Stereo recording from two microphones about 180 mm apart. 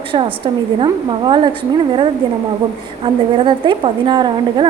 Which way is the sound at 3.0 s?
25° right (ahead or behind).